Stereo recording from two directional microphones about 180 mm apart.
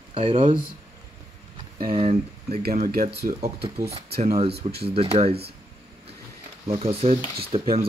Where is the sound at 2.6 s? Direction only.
55° right (ahead or behind).